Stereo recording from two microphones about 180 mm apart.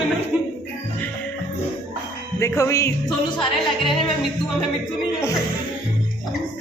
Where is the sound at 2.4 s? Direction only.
15° left (ahead or behind).